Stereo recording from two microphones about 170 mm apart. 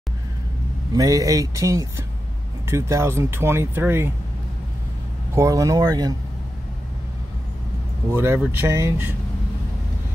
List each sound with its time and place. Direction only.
0.9 s speech: 20° right (ahead or behind)
5.3 s speech: 20° right (ahead or behind)
8.1 s speech: 15° right (ahead or behind)